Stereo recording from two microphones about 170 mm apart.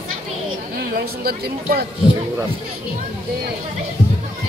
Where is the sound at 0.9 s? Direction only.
65° right (ahead or behind).